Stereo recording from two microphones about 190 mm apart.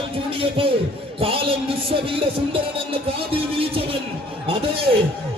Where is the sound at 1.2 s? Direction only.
30° right (ahead or behind).